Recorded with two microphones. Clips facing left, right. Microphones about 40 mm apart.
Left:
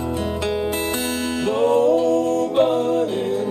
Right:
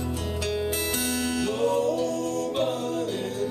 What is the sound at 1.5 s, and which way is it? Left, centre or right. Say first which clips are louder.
Music: left 10 dB; left.